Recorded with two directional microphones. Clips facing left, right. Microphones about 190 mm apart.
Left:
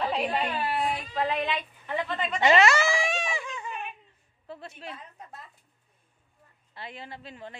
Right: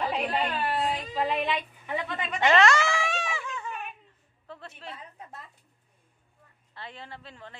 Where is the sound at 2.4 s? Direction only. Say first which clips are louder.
Left 1 dB; 10° left (ahead or behind).